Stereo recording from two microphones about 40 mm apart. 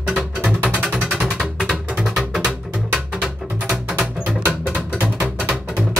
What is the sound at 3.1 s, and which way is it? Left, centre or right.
Music, centre.